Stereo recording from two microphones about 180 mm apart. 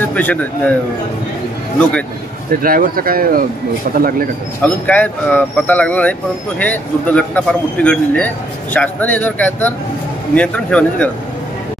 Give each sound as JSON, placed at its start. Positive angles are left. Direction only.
{"t": 0.1, "sound": "speech", "side_deg": 10}
{"t": 1.8, "sound": "speech", "side_deg": 5}
{"t": 2.6, "sound": "speech", "side_deg": -55}
{"t": 4.6, "sound": "speech", "side_deg": 10}